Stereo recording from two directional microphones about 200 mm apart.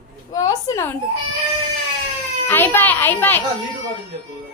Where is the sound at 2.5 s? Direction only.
10° left (ahead or behind).